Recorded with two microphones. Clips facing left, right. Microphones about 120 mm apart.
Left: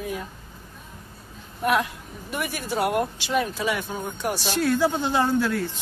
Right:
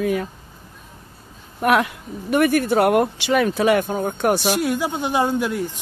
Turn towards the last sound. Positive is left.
turn(degrees=-15)  # may be behind; listen again after turning